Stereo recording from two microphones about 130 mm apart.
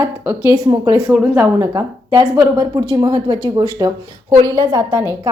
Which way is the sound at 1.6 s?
25° right (ahead or behind).